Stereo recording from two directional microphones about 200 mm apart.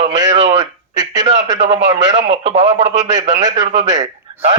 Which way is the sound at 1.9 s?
35° right (ahead or behind).